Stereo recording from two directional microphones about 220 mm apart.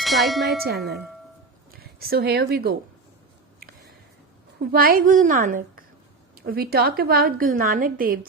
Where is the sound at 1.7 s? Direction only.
45° right (ahead or behind).